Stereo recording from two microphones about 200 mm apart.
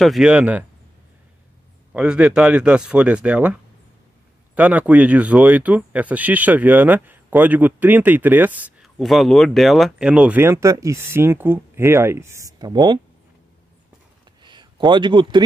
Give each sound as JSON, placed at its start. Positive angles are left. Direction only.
{"t": 0.0, "sound": "speech", "side_deg": 0}
{"t": 1.9, "sound": "speech", "side_deg": -5}
{"t": 4.6, "sound": "speech", "side_deg": -5}
{"t": 14.4, "sound": "a sound", "side_deg": -25}